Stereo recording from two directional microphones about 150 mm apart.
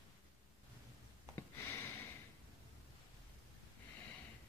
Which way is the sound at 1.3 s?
15° left (ahead or behind).